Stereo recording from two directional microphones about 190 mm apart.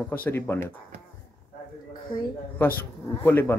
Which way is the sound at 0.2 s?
10° left (ahead or behind).